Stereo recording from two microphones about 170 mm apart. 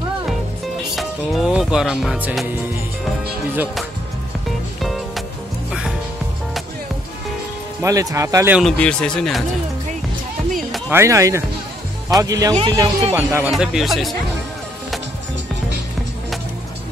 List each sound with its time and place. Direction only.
0.9 s speech: centre (ahead or behind)
4.7 s music: centre (ahead or behind)
7.8 s speech: 20° right (ahead or behind)
8.7 s speech: 5° left (ahead or behind)
10.9 s speech: 15° right (ahead or behind)
13.1 s speech: 15° right (ahead or behind)
13.5 s speech: centre (ahead or behind)